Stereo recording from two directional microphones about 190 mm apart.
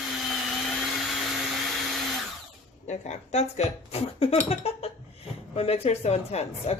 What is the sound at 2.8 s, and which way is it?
Speech, 35° left (ahead or behind).